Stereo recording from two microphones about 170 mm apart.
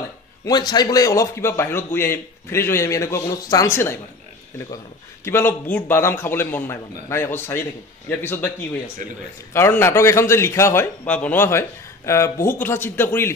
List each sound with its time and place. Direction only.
0.5 s a man's voice: 25° left (ahead or behind)
5.2 s a man's voice: 15° left (ahead or behind)
9.5 s a man's voice: 15° left (ahead or behind)